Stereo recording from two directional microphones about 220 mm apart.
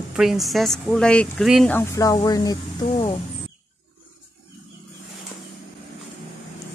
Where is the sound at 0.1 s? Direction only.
Centre (ahead or behind); by 2.5 s 15° left (ahead or behind).